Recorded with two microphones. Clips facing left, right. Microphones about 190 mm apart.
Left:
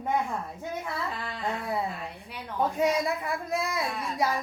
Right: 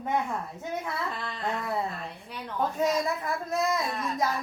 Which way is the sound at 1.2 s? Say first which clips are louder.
Even; 10° left (ahead or behind).